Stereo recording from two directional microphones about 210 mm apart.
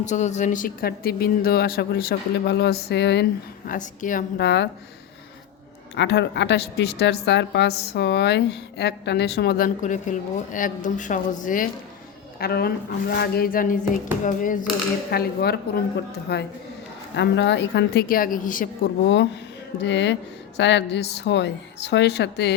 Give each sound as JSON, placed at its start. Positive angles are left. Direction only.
{"t": 0.0, "sound": "a woman's voice", "side_deg": 35}
{"t": 3.7, "sound": "a woman's voice", "side_deg": 40}
{"t": 5.9, "sound": "a woman's voice", "side_deg": 55}
{"t": 19.0, "sound": "a woman's voice", "side_deg": 60}